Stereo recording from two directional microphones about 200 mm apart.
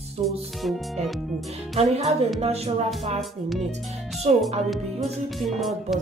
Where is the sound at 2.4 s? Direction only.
30° right (ahead or behind).